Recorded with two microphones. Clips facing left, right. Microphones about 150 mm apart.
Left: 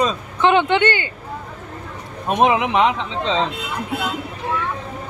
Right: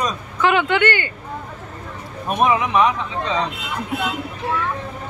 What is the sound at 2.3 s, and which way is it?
Speech, 20° left (ahead or behind).